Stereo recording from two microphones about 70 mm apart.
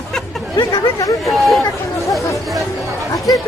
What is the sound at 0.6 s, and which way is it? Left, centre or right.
Chatter, left.